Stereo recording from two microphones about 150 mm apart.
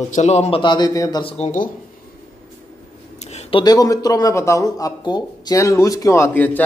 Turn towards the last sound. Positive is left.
turn(degrees=10)  # may be behind; listen again after turning